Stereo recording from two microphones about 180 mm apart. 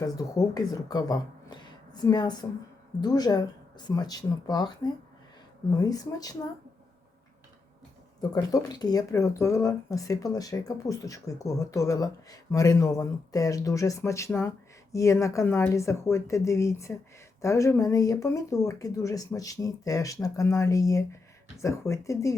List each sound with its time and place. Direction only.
0.0 s speech: 20° left (ahead or behind)
8.3 s speech: 20° left (ahead or behind)